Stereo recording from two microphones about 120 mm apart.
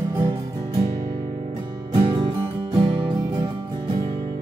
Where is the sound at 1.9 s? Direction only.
45° right (ahead or behind).